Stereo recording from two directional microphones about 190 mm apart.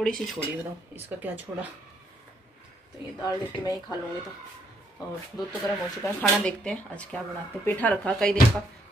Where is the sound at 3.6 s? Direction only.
20° left (ahead or behind).